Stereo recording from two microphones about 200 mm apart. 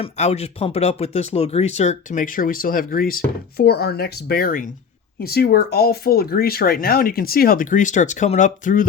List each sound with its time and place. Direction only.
0.0 s speech: 30° left (ahead or behind)